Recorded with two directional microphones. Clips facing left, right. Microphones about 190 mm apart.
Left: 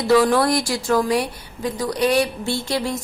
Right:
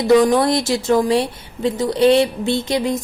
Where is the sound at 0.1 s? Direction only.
20° right (ahead or behind).